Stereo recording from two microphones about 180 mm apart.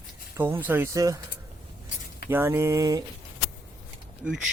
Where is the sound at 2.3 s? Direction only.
10° right (ahead or behind).